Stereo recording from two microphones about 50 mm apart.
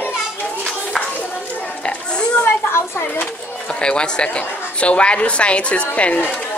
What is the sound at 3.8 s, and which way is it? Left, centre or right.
A woman's voice, centre.